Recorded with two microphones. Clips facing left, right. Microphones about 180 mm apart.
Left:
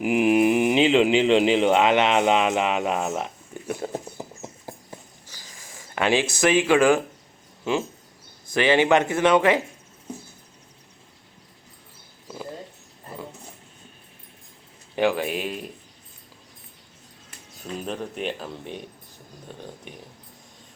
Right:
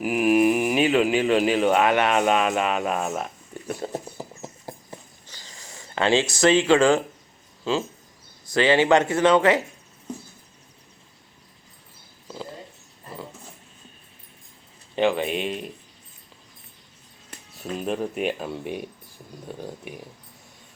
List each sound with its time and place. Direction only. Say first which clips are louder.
0.0 s speech: even; 20° left (ahead or behind)
5.3 s a sound: right 2 dB; 10° left (ahead or behind)
8.6 s a man's voice: even; 15° left (ahead or behind)
14.9 s speech: even; 20° right (ahead or behind)
15.2 s speech: right 1 dB; 5° left (ahead or behind)
17.6 s speech: right 4 dB; 5° right (ahead or behind)